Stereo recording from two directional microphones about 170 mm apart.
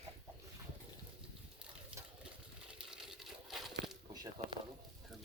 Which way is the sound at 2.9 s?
Centre (ahead or behind).